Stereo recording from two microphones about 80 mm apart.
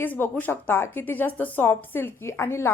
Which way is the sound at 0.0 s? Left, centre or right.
Left.